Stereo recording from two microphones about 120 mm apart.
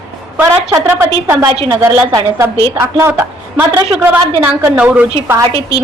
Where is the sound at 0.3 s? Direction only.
20° right (ahead or behind).